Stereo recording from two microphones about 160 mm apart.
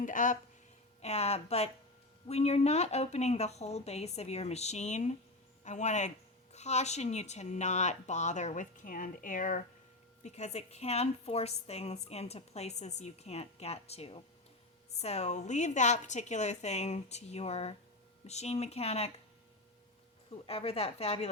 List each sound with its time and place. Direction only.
0.0 s speech: 55° left (ahead or behind)
1.0 s a woman's voice: 40° left (ahead or behind)
10.2 s a woman's voice: 45° left (ahead or behind)
20.3 s a woman's voice: 40° left (ahead or behind)